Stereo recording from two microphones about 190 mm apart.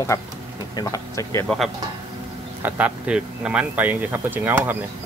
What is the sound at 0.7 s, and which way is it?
Speech, 20° left (ahead or behind).